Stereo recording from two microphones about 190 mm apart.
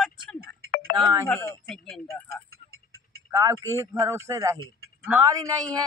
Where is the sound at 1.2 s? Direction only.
15° left (ahead or behind).